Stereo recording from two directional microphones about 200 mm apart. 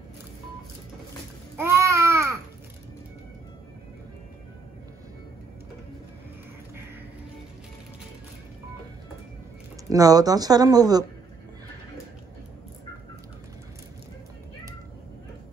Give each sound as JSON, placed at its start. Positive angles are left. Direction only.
{"t": 1.6, "sound": "babbling", "side_deg": -15}
{"t": 9.8, "sound": "speech", "side_deg": -20}